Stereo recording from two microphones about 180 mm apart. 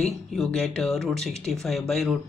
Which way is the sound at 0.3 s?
Centre (ahead or behind).